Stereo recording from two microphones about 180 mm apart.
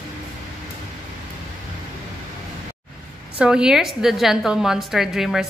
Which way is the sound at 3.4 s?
5° right (ahead or behind).